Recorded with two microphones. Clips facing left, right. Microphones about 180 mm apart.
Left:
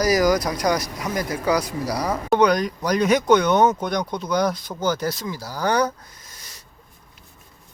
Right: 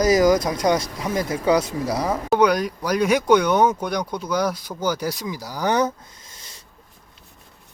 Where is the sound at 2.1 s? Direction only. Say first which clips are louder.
Even; 5° right (ahead or behind).